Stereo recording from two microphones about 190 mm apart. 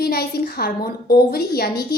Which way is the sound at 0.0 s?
55° left (ahead or behind).